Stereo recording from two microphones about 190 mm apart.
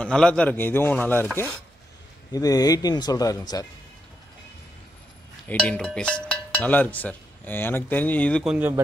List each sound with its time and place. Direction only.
0.0 s speech: 5° left (ahead or behind)
5.5 s speech: 5° left (ahead or behind)